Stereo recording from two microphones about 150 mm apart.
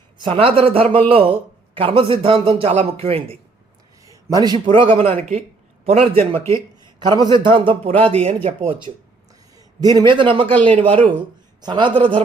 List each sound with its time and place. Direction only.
0.2 s a man's voice: 35° right (ahead or behind)
4.0 s a man's voice: 25° right (ahead or behind)
9.6 s a sound: 25° right (ahead or behind)
10.1 s a man's voice: 35° right (ahead or behind)